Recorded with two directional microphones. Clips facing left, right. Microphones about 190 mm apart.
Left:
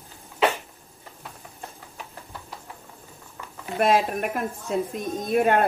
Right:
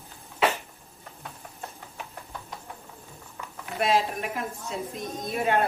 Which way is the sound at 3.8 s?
55° left (ahead or behind).